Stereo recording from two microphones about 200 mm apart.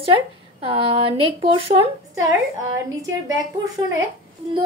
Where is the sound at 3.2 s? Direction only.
15° right (ahead or behind).